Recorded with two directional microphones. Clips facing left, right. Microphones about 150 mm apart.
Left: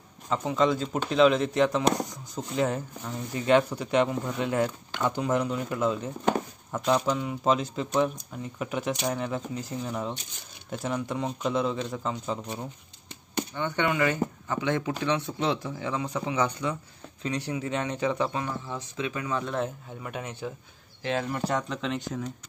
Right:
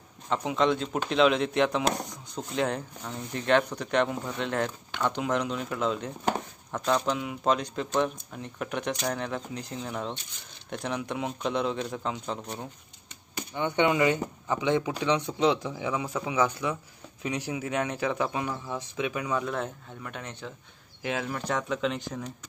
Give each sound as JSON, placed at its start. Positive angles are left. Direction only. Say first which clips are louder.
{"t": 0.5, "sound": "speech", "louder": "left 1 dB", "side_deg": 0}
{"t": 13.6, "sound": "speech", "louder": "right 3 dB", "side_deg": -15}
{"t": 19.5, "sound": "speech", "louder": "left 3 dB", "side_deg": 5}
{"t": 21.0, "sound": "speech", "louder": "left 3 dB", "side_deg": -5}